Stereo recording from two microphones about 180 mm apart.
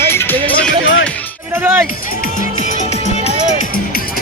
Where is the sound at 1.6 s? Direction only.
10° right (ahead or behind).